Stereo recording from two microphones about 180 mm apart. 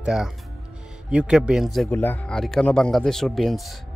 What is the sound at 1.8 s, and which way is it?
Speech, 10° left (ahead or behind).